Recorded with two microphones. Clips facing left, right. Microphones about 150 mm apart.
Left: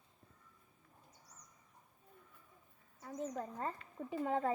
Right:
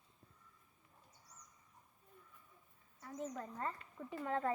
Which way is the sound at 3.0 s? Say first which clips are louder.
Left 3 dB; 25° left (ahead or behind).